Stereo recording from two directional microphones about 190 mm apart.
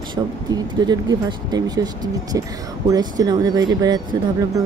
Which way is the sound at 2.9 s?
20° right (ahead or behind).